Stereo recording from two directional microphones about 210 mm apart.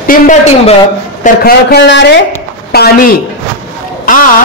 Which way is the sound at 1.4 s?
50° left (ahead or behind).